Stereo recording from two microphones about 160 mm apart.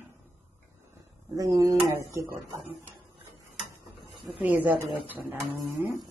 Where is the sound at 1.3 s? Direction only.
20° right (ahead or behind).